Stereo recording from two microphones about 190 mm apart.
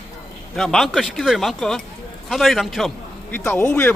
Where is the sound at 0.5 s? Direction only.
Centre (ahead or behind).